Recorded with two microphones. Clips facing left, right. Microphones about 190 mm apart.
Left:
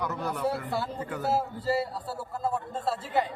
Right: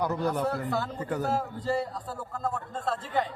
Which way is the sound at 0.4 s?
10° left (ahead or behind).